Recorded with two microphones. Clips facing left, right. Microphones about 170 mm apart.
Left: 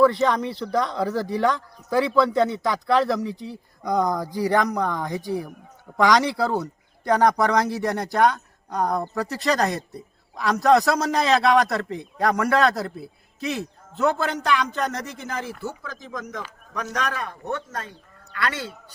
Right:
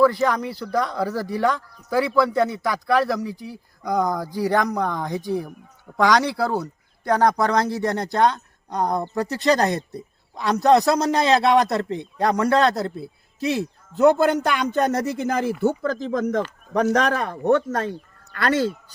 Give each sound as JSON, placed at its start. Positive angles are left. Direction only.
{"t": 0.2, "sound": "a man's voice", "side_deg": -5}
{"t": 0.9, "sound": "speech", "side_deg": 20}
{"t": 3.5, "sound": "speech", "side_deg": -5}
{"t": 4.3, "sound": "speech", "side_deg": 15}
{"t": 4.8, "sound": "speech", "side_deg": -15}
{"t": 5.2, "sound": "a man's voice", "side_deg": 15}
{"t": 13.9, "sound": "speech", "side_deg": -45}